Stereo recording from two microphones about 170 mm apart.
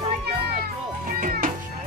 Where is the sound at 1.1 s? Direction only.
55° right (ahead or behind).